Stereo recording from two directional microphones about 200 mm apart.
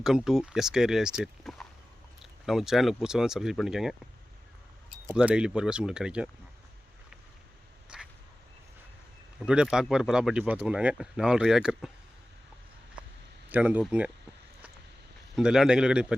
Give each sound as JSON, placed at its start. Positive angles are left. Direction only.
{"t": 0.0, "sound": "speech", "side_deg": 0}
{"t": 5.1, "sound": "speech", "side_deg": -5}
{"t": 7.9, "sound": "a sound", "side_deg": -5}
{"t": 9.5, "sound": "speech", "side_deg": -5}
{"t": 13.5, "sound": "speech", "side_deg": -5}
{"t": 15.4, "sound": "speech", "side_deg": -5}